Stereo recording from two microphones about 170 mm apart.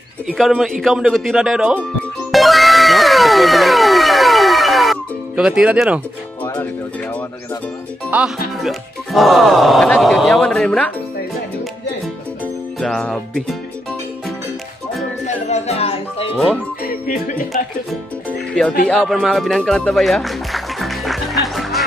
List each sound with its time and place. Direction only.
0.3 s speech: centre (ahead or behind)
2.3 s music: centre (ahead or behind)
8.1 s speech: 5° right (ahead or behind)
12.8 s speech: 5° left (ahead or behind)
15.2 s music: 40° left (ahead or behind)
18.9 s music: centre (ahead or behind)